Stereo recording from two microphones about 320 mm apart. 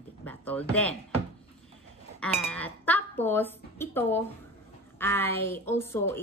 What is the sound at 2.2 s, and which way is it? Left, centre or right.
A woman's voice, centre.